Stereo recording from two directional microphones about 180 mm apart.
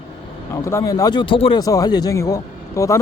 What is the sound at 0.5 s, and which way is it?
Speech, 15° left (ahead or behind).